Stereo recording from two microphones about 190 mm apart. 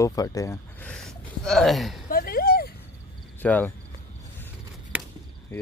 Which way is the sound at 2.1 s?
50° left (ahead or behind).